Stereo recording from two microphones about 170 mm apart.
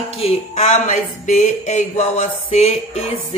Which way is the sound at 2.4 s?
35° left (ahead or behind).